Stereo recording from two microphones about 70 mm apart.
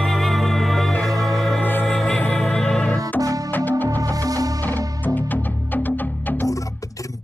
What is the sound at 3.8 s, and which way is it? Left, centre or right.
Music, right.